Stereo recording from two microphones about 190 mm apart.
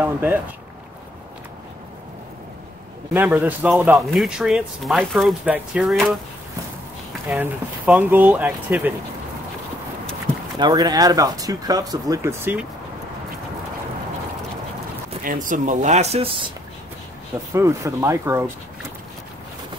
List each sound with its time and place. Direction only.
0.0 s speech: 10° right (ahead or behind)
3.1 s speech: 10° right (ahead or behind)
7.2 s speech: 5° right (ahead or behind)
10.6 s speech: 20° right (ahead or behind)
15.2 s speech: 45° right (ahead or behind)
17.6 s speech: 15° right (ahead or behind)